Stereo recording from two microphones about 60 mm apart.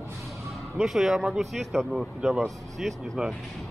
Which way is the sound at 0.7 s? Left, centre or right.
Centre.